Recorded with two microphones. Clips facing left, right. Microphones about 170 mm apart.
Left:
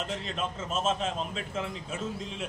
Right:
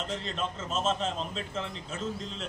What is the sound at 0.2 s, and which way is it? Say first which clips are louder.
A man's voice: even; 5° left (ahead or behind).